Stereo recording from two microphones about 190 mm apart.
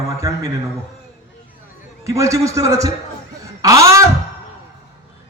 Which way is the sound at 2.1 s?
15° right (ahead or behind).